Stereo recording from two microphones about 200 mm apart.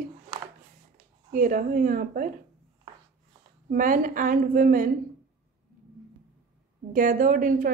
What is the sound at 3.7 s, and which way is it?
A woman's voice, 45° right (ahead or behind).